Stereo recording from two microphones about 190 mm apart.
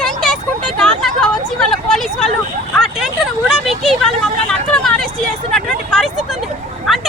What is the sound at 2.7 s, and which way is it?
Vehicle, centre (ahead or behind).